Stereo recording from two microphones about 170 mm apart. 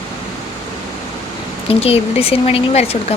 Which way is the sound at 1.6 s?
35° left (ahead or behind).